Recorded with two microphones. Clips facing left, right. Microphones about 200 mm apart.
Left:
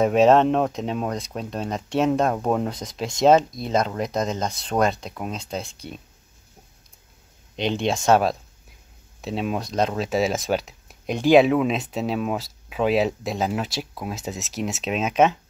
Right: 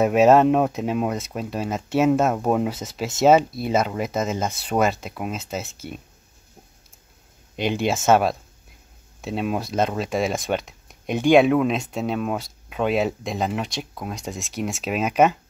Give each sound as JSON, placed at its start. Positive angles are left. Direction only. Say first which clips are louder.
{"t": 0.0, "sound": "speech", "louder": "right 1 dB", "side_deg": -5}
{"t": 7.5, "sound": "speech", "louder": "right 1 dB", "side_deg": -5}